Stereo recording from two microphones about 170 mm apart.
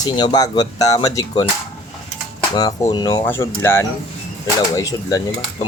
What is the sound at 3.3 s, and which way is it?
Speech, 15° left (ahead or behind).